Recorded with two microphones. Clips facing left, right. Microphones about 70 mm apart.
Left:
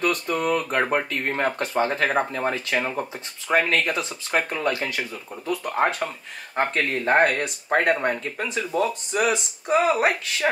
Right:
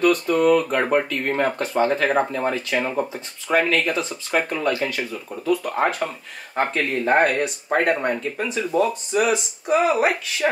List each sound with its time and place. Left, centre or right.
0.0 s speech: centre